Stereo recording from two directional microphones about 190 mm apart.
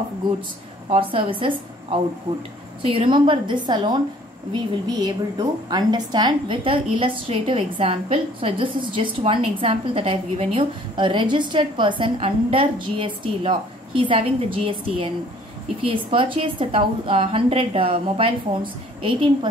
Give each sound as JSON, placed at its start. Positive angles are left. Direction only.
{"t": 0.8, "sound": "a woman's voice", "side_deg": -30}